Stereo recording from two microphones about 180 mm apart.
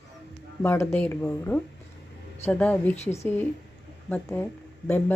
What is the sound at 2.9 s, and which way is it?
Speech, 35° left (ahead or behind).